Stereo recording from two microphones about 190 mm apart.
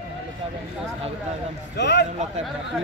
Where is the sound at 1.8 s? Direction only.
65° left (ahead or behind).